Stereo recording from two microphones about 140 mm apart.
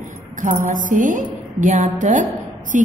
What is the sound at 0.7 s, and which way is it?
A woman's voice, 70° right (ahead or behind).